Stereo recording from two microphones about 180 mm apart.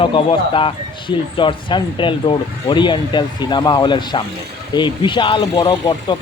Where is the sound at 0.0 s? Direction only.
30° left (ahead or behind).